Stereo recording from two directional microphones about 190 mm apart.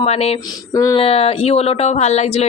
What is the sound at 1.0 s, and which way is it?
Speech, 30° left (ahead or behind).